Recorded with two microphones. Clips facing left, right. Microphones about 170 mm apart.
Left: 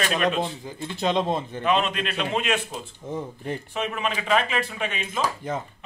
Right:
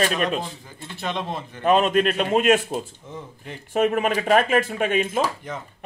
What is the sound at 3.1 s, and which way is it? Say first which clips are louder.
Speech: left 7 dB; 45° left (ahead or behind).